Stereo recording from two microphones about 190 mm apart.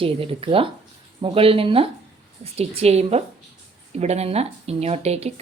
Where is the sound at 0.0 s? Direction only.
30° right (ahead or behind).